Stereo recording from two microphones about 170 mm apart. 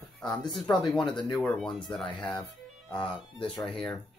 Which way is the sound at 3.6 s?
5° left (ahead or behind).